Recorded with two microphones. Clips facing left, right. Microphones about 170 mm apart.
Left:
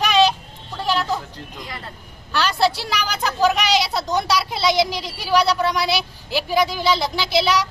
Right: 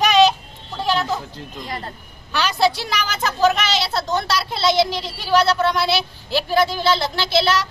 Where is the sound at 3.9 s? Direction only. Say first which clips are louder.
Left 1 dB; 15° left (ahead or behind).